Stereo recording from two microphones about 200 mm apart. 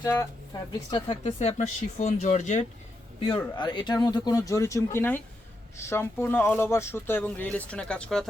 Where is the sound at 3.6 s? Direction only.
20° left (ahead or behind).